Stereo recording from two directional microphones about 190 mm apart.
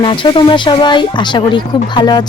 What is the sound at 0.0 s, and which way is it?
Speech, 25° left (ahead or behind).